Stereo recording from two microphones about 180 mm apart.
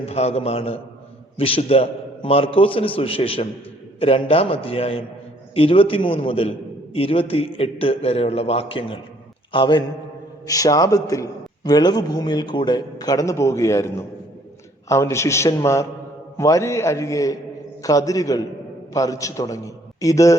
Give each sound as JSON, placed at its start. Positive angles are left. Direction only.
{"t": 0.0, "sound": "a man's voice", "side_deg": 35}